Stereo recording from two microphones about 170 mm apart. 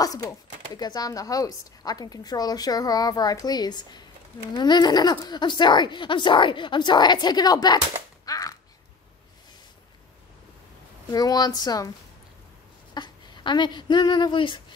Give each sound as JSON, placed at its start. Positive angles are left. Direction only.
{"t": 0.0, "sound": "a woman's voice", "side_deg": 20}
{"t": 8.3, "sound": "typewriter", "side_deg": 20}
{"t": 11.1, "sound": "a woman's voice", "side_deg": 20}
{"t": 12.9, "sound": "speech", "side_deg": 25}